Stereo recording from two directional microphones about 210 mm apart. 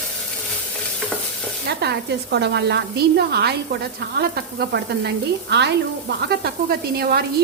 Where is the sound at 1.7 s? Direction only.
50° right (ahead or behind).